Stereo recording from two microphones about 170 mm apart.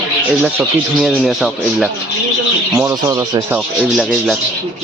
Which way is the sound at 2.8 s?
20° right (ahead or behind).